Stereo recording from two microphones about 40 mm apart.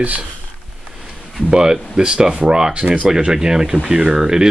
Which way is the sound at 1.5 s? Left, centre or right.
Right.